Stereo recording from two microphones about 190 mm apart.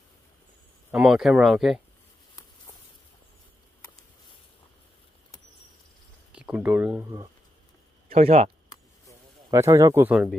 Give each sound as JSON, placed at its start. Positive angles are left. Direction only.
{"t": 0.9, "sound": "speech", "side_deg": 0}
{"t": 6.3, "sound": "speech", "side_deg": -5}
{"t": 8.1, "sound": "speech", "side_deg": -35}
{"t": 9.5, "sound": "speech", "side_deg": -15}